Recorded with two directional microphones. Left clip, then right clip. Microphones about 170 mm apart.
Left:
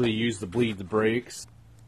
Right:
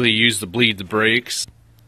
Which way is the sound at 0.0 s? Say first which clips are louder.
Right 11 dB; 15° right (ahead or behind).